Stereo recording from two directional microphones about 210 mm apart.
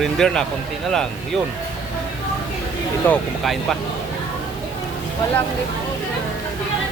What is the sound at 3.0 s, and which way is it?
Speech, 5° left (ahead or behind).